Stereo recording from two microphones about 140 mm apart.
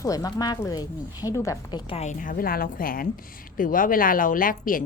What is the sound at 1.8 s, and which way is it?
Speech, 45° left (ahead or behind).